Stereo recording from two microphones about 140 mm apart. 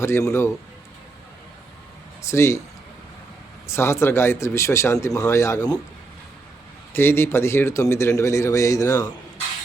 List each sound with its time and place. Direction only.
0.0 s speech: 20° left (ahead or behind)
2.2 s speech: 20° left (ahead or behind)
3.7 s speech: 20° left (ahead or behind)
6.9 s speech: 15° left (ahead or behind)